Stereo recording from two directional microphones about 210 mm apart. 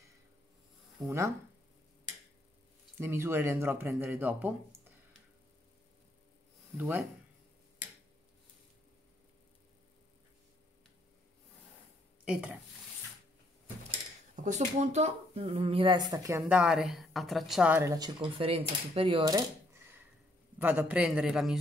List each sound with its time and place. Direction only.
1.0 s speech: 15° right (ahead or behind)
3.0 s speech: 10° right (ahead or behind)
6.8 s speech: 10° right (ahead or behind)
12.3 s a man's voice: 5° right (ahead or behind)
14.3 s a man's voice: 35° right (ahead or behind); by 21.5 s 5° right (ahead or behind)